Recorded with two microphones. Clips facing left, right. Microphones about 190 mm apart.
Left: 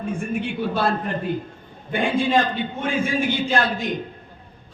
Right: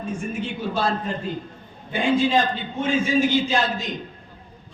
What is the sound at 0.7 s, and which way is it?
A man's voice, 60° left (ahead or behind).